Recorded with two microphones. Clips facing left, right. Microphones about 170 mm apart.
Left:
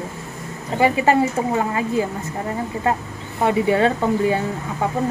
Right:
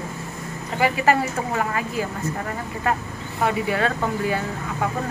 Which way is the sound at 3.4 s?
25° left (ahead or behind).